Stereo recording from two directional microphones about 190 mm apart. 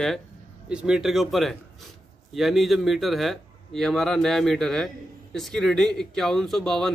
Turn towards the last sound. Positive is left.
turn(degrees=0)  # may be behind; listen again after turning